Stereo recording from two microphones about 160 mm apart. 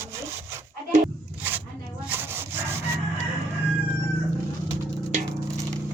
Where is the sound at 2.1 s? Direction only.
15° right (ahead or behind).